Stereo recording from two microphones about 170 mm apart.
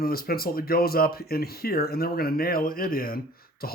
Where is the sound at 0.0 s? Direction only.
60° left (ahead or behind).